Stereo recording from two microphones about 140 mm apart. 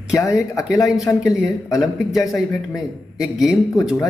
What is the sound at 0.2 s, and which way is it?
Speech, 25° left (ahead or behind).